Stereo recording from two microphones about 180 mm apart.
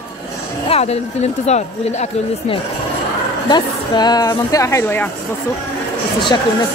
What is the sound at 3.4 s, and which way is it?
A woman's voice, 25° left (ahead or behind).